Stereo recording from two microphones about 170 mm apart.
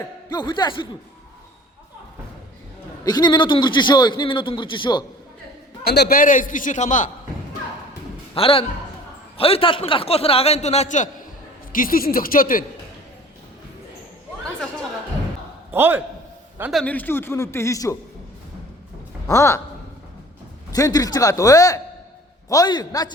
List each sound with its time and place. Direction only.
0.3 s a man's voice: 25° left (ahead or behind)
3.0 s a man's voice: 25° left (ahead or behind)
5.8 s a man's voice: 70° left (ahead or behind); by 7.1 s 45° left (ahead or behind)
8.4 s a man's voice: 30° left (ahead or behind); by 12.6 s 55° left (ahead or behind)
15.7 s a man's voice: 10° right (ahead or behind)
16.8 s speech: 10° left (ahead or behind)
19.3 s speech: 15° left (ahead or behind)
20.7 s a man's voice: 20° left (ahead or behind)